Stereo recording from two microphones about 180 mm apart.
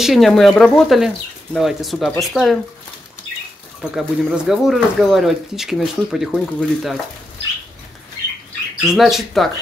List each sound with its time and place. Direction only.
0.0 s speech: centre (ahead or behind)
3.9 s speech: centre (ahead or behind)
8.9 s speech: centre (ahead or behind)